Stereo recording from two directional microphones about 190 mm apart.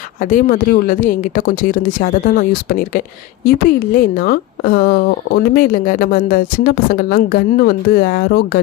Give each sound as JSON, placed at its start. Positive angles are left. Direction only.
{"t": 0.2, "sound": "a woman's voice", "side_deg": 45}